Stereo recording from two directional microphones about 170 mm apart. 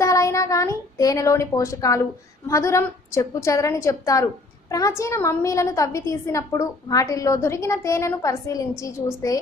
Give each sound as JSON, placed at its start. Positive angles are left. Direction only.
{"t": 0.0, "sound": "a woman's voice", "side_deg": 20}